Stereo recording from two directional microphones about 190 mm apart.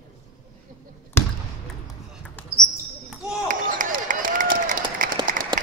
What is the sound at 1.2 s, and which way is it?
Basketball bounce, 10° left (ahead or behind).